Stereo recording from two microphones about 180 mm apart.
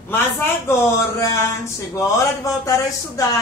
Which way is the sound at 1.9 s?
20° left (ahead or behind).